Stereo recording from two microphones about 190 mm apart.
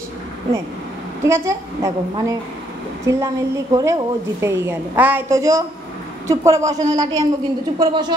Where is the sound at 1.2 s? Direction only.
15° right (ahead or behind).